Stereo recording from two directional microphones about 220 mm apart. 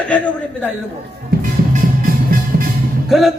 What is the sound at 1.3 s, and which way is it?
Music, 40° right (ahead or behind).